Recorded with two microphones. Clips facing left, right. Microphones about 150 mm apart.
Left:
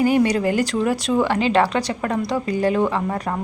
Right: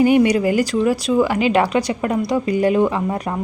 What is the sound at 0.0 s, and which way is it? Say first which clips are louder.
A woman's voice: right 3 dB; 15° right (ahead or behind).